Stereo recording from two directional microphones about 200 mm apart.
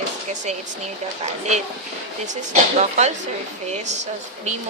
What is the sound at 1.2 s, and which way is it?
A woman's voice, 35° right (ahead or behind).